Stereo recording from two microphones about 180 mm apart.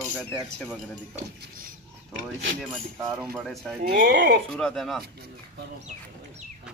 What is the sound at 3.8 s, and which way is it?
Speech, 60° right (ahead or behind).